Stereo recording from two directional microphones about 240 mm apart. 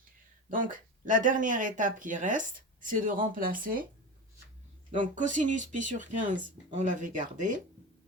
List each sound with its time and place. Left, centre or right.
0.5 s speech: right
4.9 s speech: right